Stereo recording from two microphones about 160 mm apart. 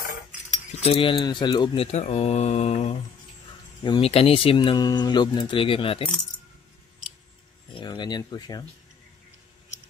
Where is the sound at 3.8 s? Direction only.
35° left (ahead or behind).